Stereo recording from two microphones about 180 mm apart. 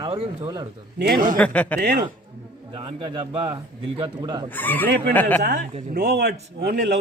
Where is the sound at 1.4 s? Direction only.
5° left (ahead or behind).